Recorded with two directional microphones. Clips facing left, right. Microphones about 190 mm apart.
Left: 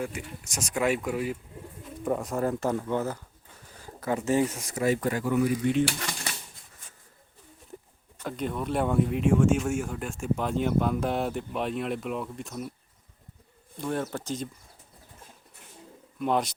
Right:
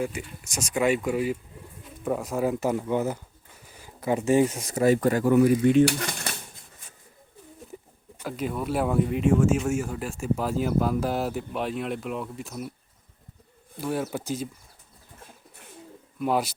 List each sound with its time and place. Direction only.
0.0 s speech: centre (ahead or behind); by 4.8 s 20° right (ahead or behind)
5.0 s speech: 45° right (ahead or behind)
8.2 s speech: 5° right (ahead or behind)
13.7 s speech: 5° right (ahead or behind)
16.1 s speech: 5° right (ahead or behind)